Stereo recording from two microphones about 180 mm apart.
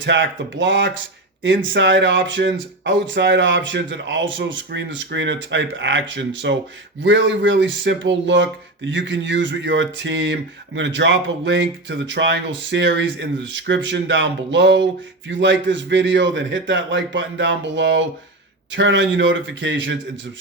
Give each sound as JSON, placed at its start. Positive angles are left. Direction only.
{"t": 0.0, "sound": "speech", "side_deg": -90}